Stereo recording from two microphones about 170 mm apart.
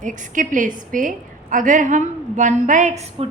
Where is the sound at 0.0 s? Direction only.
50° right (ahead or behind).